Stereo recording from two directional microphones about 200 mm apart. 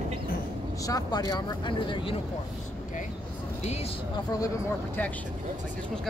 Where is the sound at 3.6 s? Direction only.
30° left (ahead or behind).